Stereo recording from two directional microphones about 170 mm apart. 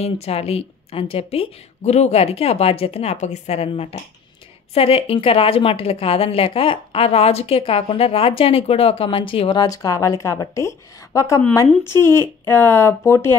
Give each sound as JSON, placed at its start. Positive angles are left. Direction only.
{"t": 0.0, "sound": "a woman's voice", "side_deg": 35}